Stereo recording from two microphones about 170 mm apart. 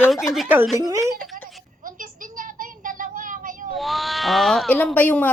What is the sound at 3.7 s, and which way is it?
Speech, centre (ahead or behind).